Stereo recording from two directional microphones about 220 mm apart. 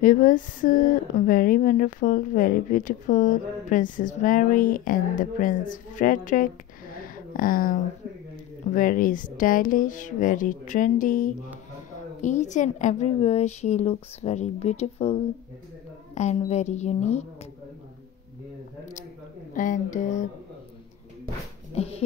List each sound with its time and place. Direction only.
0.0 s speech: 35° left (ahead or behind)
16.2 s speech: 30° left (ahead or behind)
19.5 s speech: 35° left (ahead or behind)
21.7 s speech: 25° left (ahead or behind)